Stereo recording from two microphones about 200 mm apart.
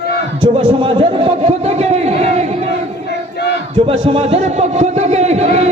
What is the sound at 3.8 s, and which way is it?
A man's voice, 25° right (ahead or behind).